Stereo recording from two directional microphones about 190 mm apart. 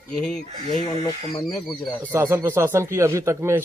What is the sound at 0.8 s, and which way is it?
Speech, 20° left (ahead or behind).